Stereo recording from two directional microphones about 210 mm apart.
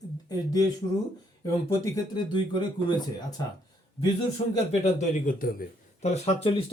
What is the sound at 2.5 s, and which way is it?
Speech, 20° left (ahead or behind).